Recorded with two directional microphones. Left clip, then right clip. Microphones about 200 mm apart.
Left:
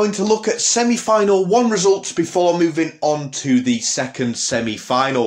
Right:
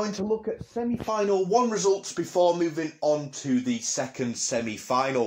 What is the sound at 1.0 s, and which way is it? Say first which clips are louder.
Speech: left 9 dB; 15° left (ahead or behind).